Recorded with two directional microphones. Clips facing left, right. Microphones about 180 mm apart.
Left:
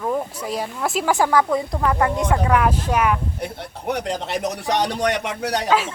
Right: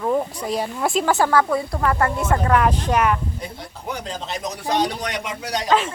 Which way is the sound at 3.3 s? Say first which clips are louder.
Left 4 dB; 65° left (ahead or behind).